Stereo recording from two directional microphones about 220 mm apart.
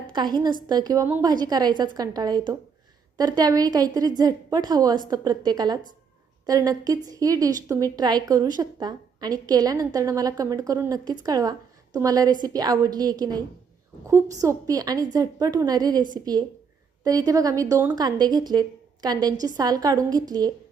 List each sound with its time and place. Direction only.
0.1 s a woman's voice: 20° right (ahead or behind)